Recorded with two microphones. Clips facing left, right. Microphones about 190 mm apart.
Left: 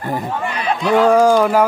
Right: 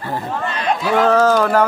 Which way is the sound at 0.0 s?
15° left (ahead or behind).